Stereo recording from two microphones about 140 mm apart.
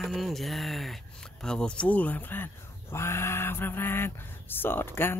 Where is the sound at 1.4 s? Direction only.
5° left (ahead or behind).